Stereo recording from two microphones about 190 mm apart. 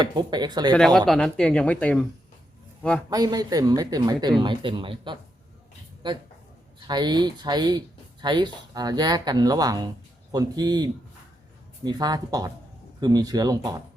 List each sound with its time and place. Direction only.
0.0 s speech: 25° right (ahead or behind)
0.7 s speech: centre (ahead or behind)
3.1 s speech: 20° right (ahead or behind)